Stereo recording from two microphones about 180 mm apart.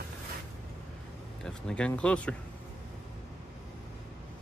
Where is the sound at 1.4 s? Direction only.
5° left (ahead or behind).